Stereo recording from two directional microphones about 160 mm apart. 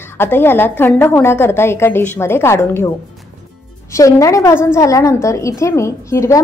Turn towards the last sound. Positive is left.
turn(degrees=20)  # may be behind; listen again after turning